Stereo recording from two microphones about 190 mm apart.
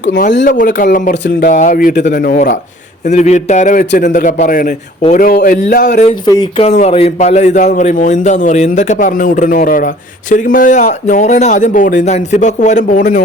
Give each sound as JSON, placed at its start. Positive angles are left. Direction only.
{"t": 0.4, "sound": "a man's voice", "side_deg": 45}
{"t": 3.1, "sound": "a man's voice", "side_deg": 35}
{"t": 6.2, "sound": "speech", "side_deg": 20}
{"t": 6.7, "sound": "a man's voice", "side_deg": 35}